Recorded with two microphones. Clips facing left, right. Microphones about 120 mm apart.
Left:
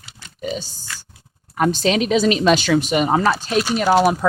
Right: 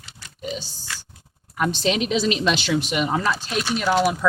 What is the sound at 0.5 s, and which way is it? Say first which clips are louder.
A woman's voice: left 4 dB; 45° left (ahead or behind).